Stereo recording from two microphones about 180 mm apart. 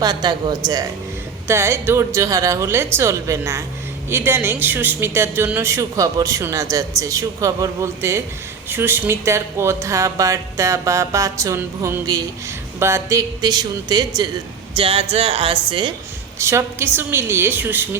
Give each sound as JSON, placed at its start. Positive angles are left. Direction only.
{"t": 0.0, "sound": "speech", "side_deg": -20}
{"t": 14.8, "sound": "speech", "side_deg": -30}
{"t": 16.4, "sound": "speech", "side_deg": -15}